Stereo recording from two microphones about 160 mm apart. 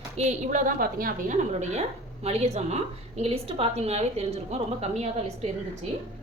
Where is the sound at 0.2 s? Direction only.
50° right (ahead or behind).